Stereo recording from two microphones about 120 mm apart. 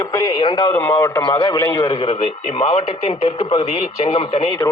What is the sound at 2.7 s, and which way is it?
Speech, 55° left (ahead or behind).